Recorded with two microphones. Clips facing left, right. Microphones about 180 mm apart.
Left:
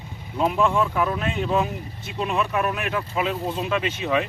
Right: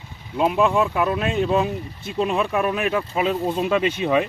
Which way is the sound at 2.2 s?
30° right (ahead or behind).